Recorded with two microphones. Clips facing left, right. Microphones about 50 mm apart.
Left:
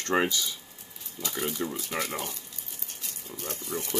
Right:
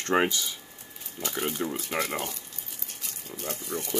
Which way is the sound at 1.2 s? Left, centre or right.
Right.